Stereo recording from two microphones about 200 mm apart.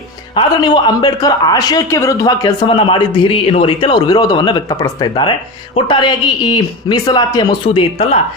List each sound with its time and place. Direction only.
0.3 s speech: 20° left (ahead or behind)